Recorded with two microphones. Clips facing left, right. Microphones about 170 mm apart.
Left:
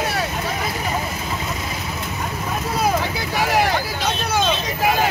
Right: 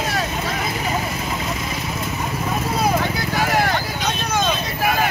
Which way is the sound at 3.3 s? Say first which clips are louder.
Left 2 dB; 15° left (ahead or behind).